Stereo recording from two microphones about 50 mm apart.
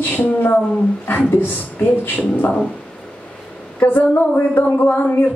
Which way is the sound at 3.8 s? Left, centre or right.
Left.